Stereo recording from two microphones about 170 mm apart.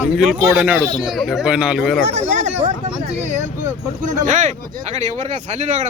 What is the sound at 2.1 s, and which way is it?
Speech, 45° right (ahead or behind).